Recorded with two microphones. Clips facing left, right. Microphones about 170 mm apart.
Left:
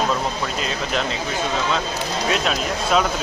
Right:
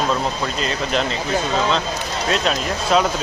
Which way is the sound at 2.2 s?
5° left (ahead or behind).